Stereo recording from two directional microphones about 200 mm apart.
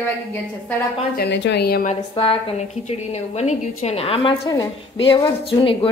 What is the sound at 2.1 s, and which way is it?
A woman's voice, 25° left (ahead or behind).